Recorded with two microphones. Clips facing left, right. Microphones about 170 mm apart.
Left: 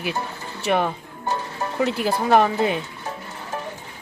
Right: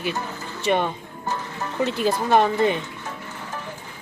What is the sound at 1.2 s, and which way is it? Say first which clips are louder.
Music: left 3 dB; 35° left (ahead or behind).